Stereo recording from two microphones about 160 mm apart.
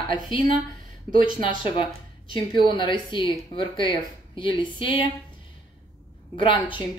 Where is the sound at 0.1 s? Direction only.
30° left (ahead or behind).